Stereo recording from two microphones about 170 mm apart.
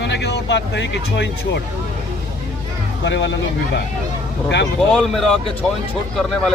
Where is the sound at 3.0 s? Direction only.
90° left.